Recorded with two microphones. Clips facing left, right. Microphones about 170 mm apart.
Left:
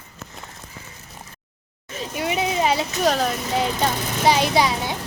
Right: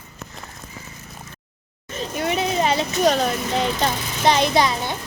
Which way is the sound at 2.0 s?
10° left (ahead or behind).